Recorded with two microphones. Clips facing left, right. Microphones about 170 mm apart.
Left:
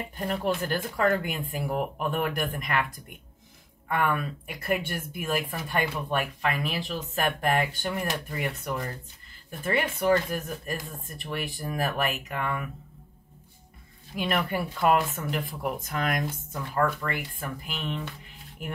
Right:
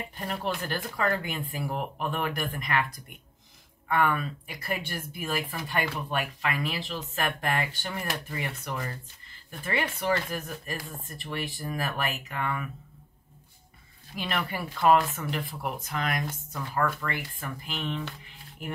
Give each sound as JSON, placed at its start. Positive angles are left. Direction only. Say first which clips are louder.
{"t": 0.2, "sound": "speech", "louder": "left 4 dB", "side_deg": 50}
{"t": 3.8, "sound": "speech", "louder": "right 1 dB", "side_deg": 50}
{"t": 14.2, "sound": "speech", "louder": "left 4 dB", "side_deg": 50}